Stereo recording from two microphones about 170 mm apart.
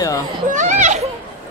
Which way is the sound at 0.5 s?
45° right (ahead or behind).